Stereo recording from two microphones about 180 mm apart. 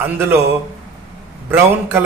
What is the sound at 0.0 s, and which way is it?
Speech, 10° right (ahead or behind).